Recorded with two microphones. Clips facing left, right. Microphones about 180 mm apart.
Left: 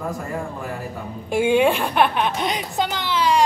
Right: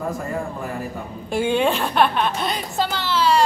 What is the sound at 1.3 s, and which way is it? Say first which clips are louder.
A woman's voice: left 3 dB; 10° left (ahead or behind).